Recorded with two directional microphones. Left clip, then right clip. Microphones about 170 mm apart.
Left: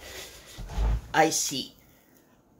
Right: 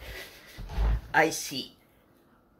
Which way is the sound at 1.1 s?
20° left (ahead or behind).